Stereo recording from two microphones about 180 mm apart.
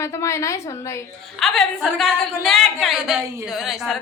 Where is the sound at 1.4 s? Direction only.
Centre (ahead or behind).